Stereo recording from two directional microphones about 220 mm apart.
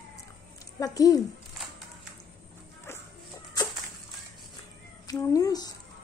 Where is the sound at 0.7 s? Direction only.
15° left (ahead or behind).